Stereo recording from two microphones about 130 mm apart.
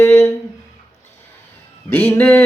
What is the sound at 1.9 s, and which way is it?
Mantra, 15° left (ahead or behind).